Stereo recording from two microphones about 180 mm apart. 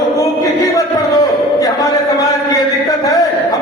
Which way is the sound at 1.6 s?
20° left (ahead or behind).